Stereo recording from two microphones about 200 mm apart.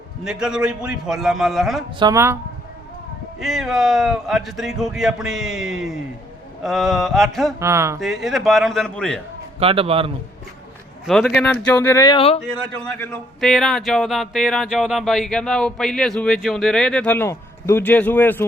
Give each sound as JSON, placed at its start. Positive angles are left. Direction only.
{"t": 0.3, "sound": "speech", "side_deg": -5}
{"t": 2.0, "sound": "speech", "side_deg": -15}
{"t": 3.4, "sound": "speech", "side_deg": 0}
{"t": 7.6, "sound": "speech", "side_deg": -15}
{"t": 7.9, "sound": "speech", "side_deg": 0}
{"t": 9.6, "sound": "a man's voice", "side_deg": -30}
{"t": 11.0, "sound": "speech", "side_deg": 0}
{"t": 12.5, "sound": "speech", "side_deg": 5}